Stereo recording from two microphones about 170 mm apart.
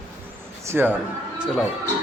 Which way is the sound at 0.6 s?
10° right (ahead or behind).